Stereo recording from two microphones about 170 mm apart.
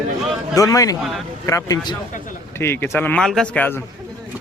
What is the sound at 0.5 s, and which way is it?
A man's voice, 20° left (ahead or behind).